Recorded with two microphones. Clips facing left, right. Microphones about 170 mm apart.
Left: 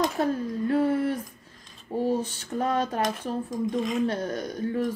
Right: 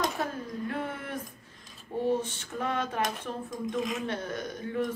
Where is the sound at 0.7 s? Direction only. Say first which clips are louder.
Left 14 dB; 35° left (ahead or behind).